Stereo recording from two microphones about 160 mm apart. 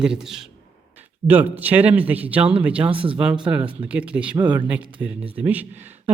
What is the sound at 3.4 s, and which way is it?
Speech, 5° right (ahead or behind).